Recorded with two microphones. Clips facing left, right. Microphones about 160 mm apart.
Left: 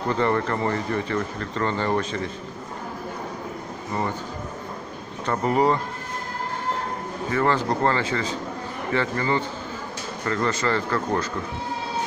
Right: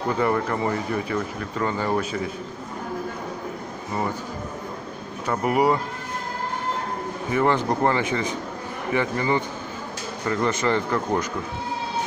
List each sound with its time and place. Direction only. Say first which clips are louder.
0.1 s speech: even; 5° right (ahead or behind)
5.2 s speech: even; 10° right (ahead or behind)
7.2 s speech: right 1 dB; 15° right (ahead or behind)